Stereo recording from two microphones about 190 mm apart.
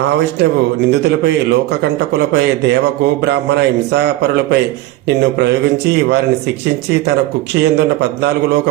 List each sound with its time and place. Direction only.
0.9 s a man's voice: 60° right (ahead or behind)